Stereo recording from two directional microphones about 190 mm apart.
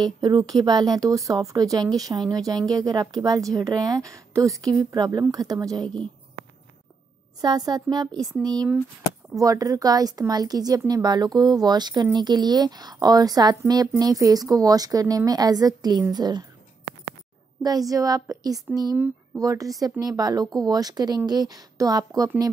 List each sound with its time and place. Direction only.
0.0 s speech: 20° right (ahead or behind)
7.4 s speech: 20° right (ahead or behind)
9.3 s speech: 15° right (ahead or behind)
17.6 s speech: 20° right (ahead or behind)